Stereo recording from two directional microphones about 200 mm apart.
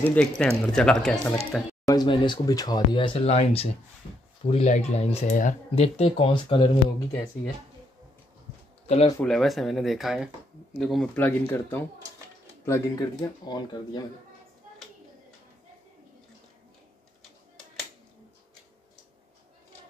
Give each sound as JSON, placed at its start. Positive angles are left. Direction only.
{"t": 0.0, "sound": "speech", "side_deg": 5}
{"t": 1.9, "sound": "speech", "side_deg": 20}
{"t": 8.8, "sound": "speech", "side_deg": 35}
{"t": 9.2, "sound": "speech", "side_deg": 0}